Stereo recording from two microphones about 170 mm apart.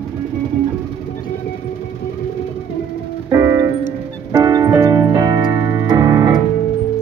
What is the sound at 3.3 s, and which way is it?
Music, 20° right (ahead or behind).